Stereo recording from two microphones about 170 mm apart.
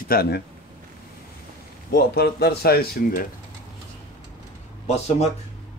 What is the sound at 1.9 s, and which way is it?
Speech, 70° left (ahead or behind).